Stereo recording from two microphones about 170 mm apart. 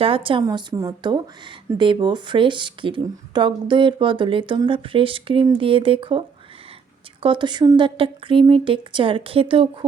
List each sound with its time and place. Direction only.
0.0 s speech: 30° right (ahead or behind)